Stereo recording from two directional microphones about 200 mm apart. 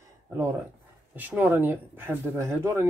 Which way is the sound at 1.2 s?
10° right (ahead or behind).